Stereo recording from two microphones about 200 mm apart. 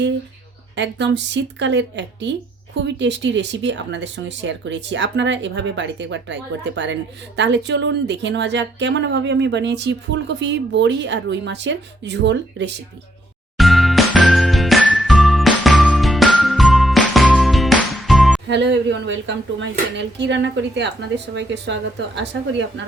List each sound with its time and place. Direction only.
0.8 s speech: 60° right (ahead or behind)
13.6 s music: centre (ahead or behind)
18.4 s speech: 60° right (ahead or behind)